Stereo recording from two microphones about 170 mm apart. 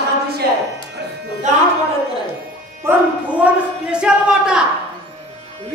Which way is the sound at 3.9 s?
5° right (ahead or behind).